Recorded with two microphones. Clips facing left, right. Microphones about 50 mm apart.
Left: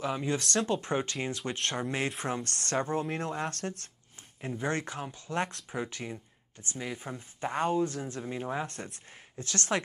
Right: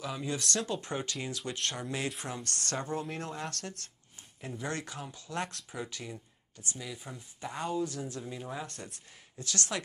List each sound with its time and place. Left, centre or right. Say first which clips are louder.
0.0 s speech: left 4 dB; left